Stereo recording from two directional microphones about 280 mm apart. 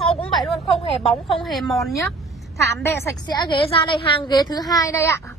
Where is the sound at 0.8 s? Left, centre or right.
Left.